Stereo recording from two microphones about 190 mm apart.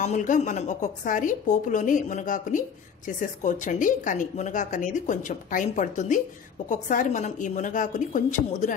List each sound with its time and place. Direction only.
0.0 s a woman's voice: 40° left (ahead or behind)